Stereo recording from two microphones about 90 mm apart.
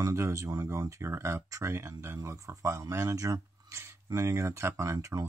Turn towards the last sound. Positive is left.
turn(degrees=-35)  # may be behind; listen again after turning